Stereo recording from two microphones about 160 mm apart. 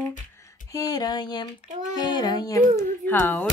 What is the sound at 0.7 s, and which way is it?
Speech, 20° left (ahead or behind).